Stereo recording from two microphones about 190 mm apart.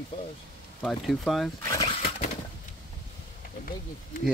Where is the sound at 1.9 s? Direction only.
35° left (ahead or behind).